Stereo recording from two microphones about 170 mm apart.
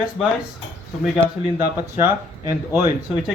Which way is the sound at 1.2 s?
15° right (ahead or behind).